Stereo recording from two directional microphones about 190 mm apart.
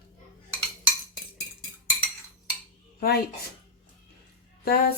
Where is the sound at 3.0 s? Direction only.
55° left (ahead or behind).